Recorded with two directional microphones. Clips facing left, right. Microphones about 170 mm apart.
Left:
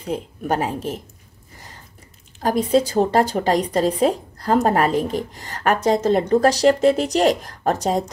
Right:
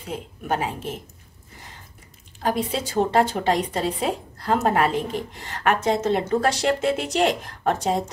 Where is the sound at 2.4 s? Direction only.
40° left (ahead or behind).